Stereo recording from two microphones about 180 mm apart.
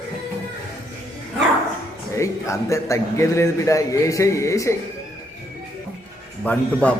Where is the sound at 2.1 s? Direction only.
15° left (ahead or behind).